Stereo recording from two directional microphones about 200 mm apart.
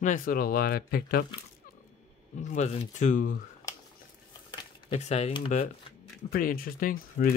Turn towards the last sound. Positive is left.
turn(degrees=45)  # may be behind; listen again after turning